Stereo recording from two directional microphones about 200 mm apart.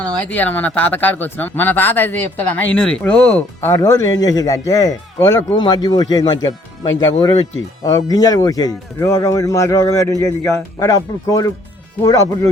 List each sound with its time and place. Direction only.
0.0 s speech: 10° left (ahead or behind)
7.9 s speech: 20° left (ahead or behind)